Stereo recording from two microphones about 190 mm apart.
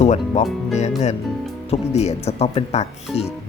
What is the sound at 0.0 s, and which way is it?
Speech, 35° left (ahead or behind).